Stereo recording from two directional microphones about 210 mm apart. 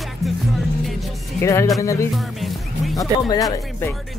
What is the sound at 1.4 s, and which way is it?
A woman's voice, 15° left (ahead or behind).